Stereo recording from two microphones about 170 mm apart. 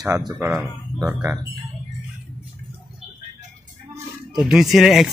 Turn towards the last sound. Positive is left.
turn(degrees=0)  # may be behind; listen again after turning